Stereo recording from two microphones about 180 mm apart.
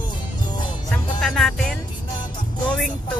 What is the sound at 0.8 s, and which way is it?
Music, centre (ahead or behind).